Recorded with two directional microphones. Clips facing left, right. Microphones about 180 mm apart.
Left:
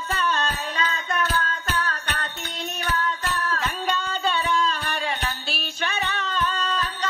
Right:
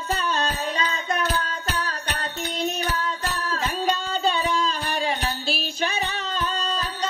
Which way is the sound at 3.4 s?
35° right (ahead or behind).